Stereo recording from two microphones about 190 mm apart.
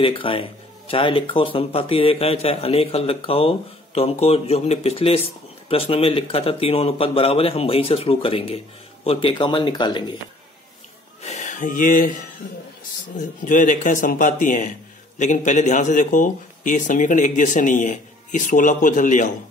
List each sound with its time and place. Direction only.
0.0 s speech: 30° left (ahead or behind)
11.2 s speech: 40° left (ahead or behind)
13.5 s speech: 40° left (ahead or behind)